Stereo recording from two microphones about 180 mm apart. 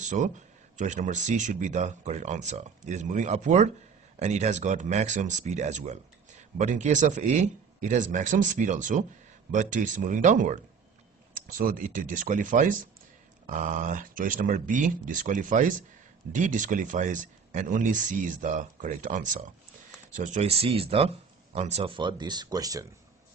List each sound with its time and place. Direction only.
0.0 s speech: 40° right (ahead or behind); by 22.8 s 20° right (ahead or behind)